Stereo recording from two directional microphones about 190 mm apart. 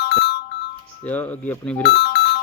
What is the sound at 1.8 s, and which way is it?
Speech, 60° left (ahead or behind).